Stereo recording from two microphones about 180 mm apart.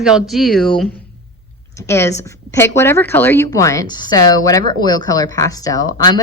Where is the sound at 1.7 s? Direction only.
15° left (ahead or behind).